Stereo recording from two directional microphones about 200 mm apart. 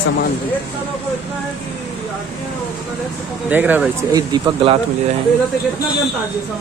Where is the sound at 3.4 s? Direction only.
10° right (ahead or behind).